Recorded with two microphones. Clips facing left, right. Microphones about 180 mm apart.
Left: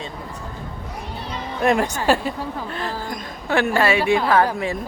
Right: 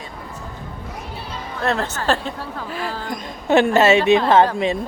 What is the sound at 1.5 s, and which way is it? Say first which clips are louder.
A woman's voice: left 3 dB; 15° left (ahead or behind).